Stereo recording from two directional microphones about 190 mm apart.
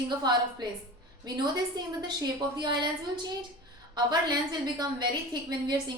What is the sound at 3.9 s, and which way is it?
A woman's voice, 20° right (ahead or behind).